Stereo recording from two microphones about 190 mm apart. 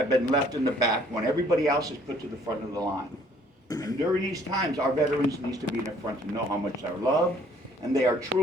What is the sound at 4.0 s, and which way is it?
A man's voice, 20° right (ahead or behind).